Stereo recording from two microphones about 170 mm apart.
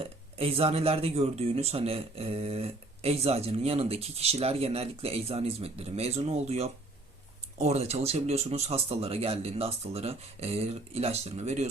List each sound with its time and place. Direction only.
0.0 s speech: 35° right (ahead or behind)